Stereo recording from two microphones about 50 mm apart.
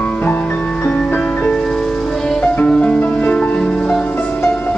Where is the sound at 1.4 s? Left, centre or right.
Left.